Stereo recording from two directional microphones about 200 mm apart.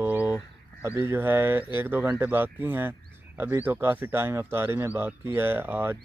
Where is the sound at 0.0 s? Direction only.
10° right (ahead or behind).